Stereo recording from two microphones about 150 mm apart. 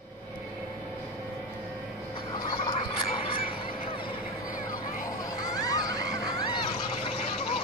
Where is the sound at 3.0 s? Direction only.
40° left (ahead or behind).